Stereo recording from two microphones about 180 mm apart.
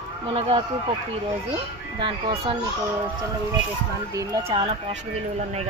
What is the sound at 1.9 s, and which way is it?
Speech, 30° right (ahead or behind).